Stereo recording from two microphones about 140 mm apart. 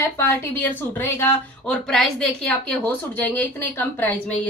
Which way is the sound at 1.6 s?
5° left (ahead or behind).